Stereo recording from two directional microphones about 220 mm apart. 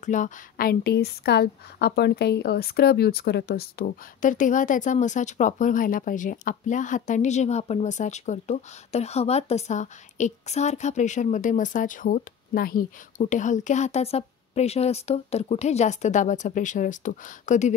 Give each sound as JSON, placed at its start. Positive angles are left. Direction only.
{"t": 0.0, "sound": "a woman's voice", "side_deg": 35}